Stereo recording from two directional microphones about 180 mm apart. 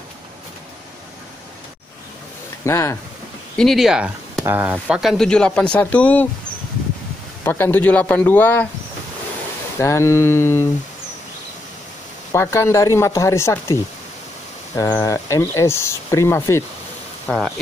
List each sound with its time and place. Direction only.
2.6 s speech: 15° left (ahead or behind)
3.5 s speech: centre (ahead or behind)
7.4 s speech: 10° left (ahead or behind)
9.8 s speech: 15° left (ahead or behind)
12.3 s speech: 15° left (ahead or behind)
14.8 s speech: 20° left (ahead or behind)
17.3 s speech: centre (ahead or behind)